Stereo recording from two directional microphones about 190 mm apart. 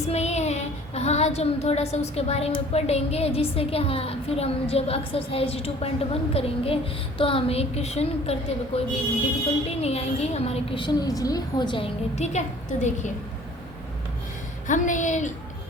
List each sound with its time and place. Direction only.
0.1 s a woman's voice: 35° left (ahead or behind)
14.7 s a woman's voice: 40° left (ahead or behind)